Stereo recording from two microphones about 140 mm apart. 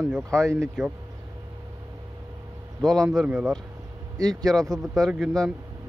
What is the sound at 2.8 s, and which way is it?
Speech, centre (ahead or behind).